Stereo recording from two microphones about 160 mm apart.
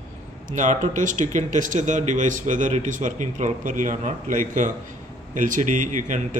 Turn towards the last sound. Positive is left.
turn(degrees=-55)  # may be behind; listen again after turning